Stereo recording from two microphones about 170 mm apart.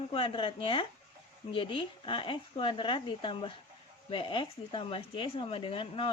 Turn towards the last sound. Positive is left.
turn(degrees=35)  # may be behind; listen again after turning